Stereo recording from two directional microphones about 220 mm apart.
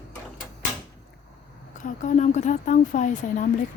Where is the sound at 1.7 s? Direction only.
35° left (ahead or behind).